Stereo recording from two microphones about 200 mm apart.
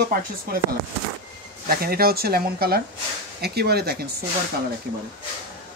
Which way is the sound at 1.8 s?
50° right (ahead or behind).